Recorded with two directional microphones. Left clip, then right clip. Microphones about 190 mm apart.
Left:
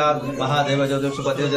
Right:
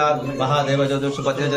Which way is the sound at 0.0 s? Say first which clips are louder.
Right 1 dB; 40° right (ahead or behind).